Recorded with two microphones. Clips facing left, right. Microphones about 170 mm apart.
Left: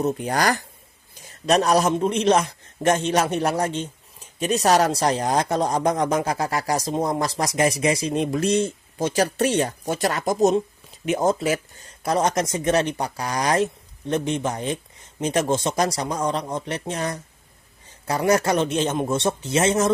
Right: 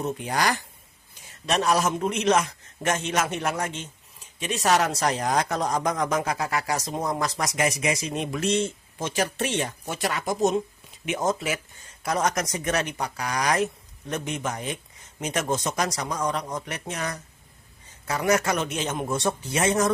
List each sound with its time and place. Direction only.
0.0 s a man's voice: 45° left (ahead or behind); by 19.9 s 25° left (ahead or behind)